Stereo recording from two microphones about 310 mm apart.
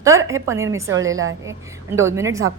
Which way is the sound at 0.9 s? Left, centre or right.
Right.